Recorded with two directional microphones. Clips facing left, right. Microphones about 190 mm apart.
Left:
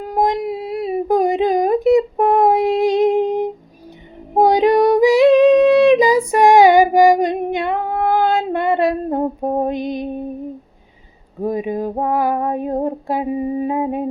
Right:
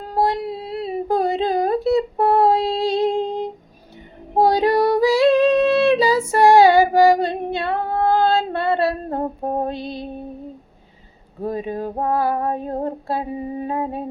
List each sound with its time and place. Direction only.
0.0 s a sound: 15° left (ahead or behind)
4.4 s female singing: 20° left (ahead or behind)
9.6 s mantra: 15° left (ahead or behind)
11.4 s female singing: 15° left (ahead or behind)